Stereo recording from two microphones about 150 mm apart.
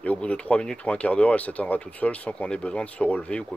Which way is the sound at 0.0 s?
10° left (ahead or behind).